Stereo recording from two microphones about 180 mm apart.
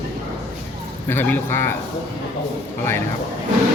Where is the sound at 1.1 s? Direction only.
10° left (ahead or behind).